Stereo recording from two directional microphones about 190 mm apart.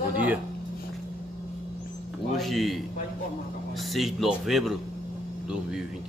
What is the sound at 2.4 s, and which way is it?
A man's voice, centre (ahead or behind).